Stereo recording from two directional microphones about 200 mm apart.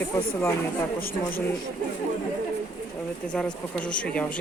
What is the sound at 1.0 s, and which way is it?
Speech, 45° left (ahead or behind).